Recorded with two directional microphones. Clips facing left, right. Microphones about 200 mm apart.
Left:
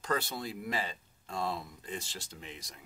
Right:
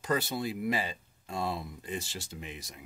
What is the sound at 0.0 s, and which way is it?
Speech, 10° right (ahead or behind).